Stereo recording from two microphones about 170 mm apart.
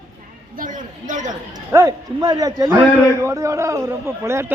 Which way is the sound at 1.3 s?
20° right (ahead or behind).